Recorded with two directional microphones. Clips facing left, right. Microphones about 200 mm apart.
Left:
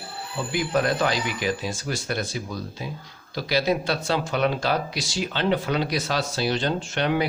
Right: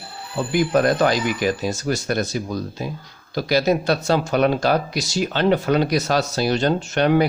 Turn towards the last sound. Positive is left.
turn(degrees=-45)  # may be behind; listen again after turning